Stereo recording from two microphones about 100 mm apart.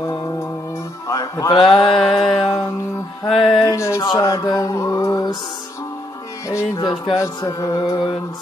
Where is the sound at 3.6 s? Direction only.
30° left (ahead or behind).